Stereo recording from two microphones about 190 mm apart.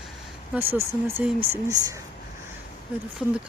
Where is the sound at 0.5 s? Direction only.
10° right (ahead or behind).